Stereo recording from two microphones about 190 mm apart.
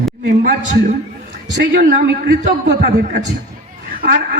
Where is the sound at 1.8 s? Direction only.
60° right (ahead or behind).